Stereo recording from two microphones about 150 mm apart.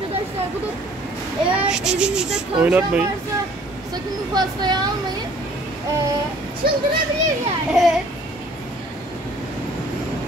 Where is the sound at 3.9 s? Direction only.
25° right (ahead or behind).